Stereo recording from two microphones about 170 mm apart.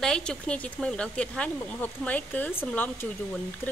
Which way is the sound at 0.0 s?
5° left (ahead or behind).